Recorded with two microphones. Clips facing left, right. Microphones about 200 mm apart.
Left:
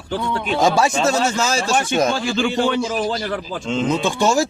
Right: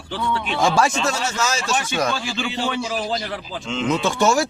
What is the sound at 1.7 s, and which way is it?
A man's voice, 50° left (ahead or behind).